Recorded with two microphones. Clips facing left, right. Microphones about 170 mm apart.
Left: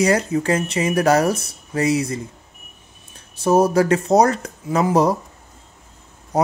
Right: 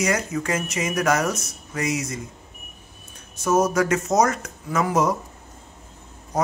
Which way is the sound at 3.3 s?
30° left (ahead or behind).